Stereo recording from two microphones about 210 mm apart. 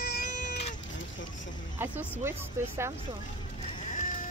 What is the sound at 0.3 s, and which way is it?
Cat, 35° left (ahead or behind).